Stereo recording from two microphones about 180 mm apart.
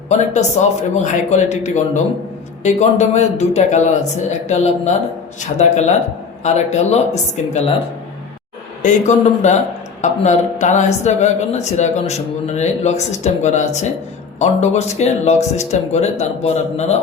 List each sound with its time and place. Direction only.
0.1 s speech: 40° left (ahead or behind)
8.8 s speech: 40° left (ahead or behind)